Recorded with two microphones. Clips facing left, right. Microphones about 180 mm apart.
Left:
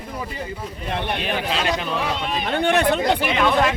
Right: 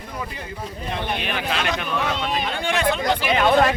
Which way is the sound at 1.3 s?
30° left (ahead or behind).